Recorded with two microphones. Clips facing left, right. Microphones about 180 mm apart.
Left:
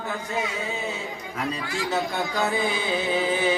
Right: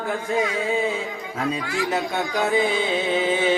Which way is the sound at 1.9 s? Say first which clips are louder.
Left 1 dB; 20° right (ahead or behind).